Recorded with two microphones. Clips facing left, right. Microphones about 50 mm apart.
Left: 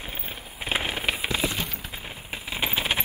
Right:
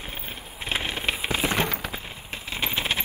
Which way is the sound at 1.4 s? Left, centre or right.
Right.